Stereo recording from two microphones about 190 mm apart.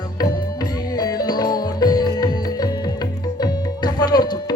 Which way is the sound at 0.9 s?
20° left (ahead or behind).